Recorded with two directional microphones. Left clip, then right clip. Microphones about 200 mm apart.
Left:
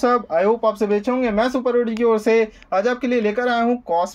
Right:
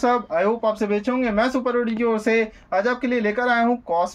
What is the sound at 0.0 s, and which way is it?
Speech, 25° left (ahead or behind).